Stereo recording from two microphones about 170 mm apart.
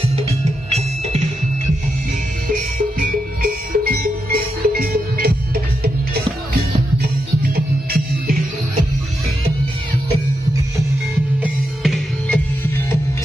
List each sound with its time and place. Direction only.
0.7 s music: 40° right (ahead or behind)
3.0 s music: 55° right (ahead or behind)
11.4 s music: centre (ahead or behind)